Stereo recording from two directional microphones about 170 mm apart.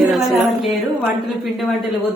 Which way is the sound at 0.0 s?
Centre (ahead or behind).